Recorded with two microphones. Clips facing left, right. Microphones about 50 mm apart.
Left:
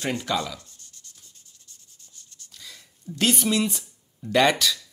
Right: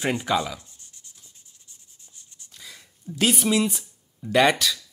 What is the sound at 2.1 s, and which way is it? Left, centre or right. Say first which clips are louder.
Speech: even; centre.